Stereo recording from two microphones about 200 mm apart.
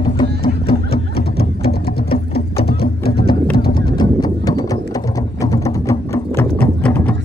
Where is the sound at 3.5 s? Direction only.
50° left (ahead or behind).